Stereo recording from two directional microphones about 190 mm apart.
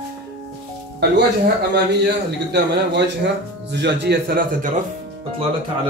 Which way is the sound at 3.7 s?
65° right (ahead or behind).